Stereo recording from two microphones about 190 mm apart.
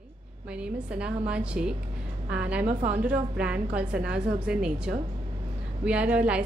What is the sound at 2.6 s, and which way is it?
Speech, 35° right (ahead or behind).